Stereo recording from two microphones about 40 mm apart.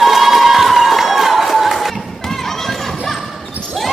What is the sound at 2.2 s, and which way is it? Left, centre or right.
Children playing, centre.